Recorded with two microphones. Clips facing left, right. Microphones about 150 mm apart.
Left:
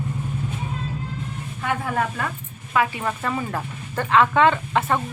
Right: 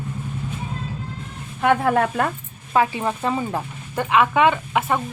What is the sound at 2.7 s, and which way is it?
Speech, 25° right (ahead or behind).